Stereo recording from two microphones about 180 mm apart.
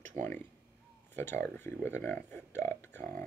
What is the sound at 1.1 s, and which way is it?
Speech, 10° left (ahead or behind).